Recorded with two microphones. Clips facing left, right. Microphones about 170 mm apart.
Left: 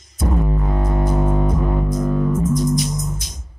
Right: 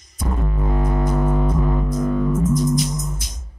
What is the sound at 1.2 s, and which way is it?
Music, 10° left (ahead or behind).